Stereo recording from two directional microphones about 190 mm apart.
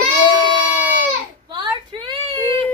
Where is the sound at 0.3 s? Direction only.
25° left (ahead or behind).